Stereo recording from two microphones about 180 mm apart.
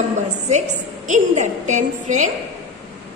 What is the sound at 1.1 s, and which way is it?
A woman's voice, 45° right (ahead or behind).